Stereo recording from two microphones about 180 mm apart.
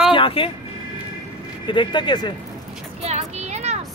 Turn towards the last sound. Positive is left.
turn(degrees=-40)  # may be behind; listen again after turning